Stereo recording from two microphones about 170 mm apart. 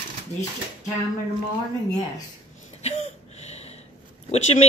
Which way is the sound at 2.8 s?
40° left (ahead or behind).